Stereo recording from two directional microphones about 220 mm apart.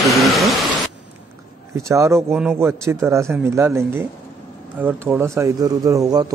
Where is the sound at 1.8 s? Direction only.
15° right (ahead or behind).